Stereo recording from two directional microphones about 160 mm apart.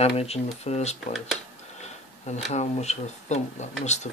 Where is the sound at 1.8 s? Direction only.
45° left (ahead or behind).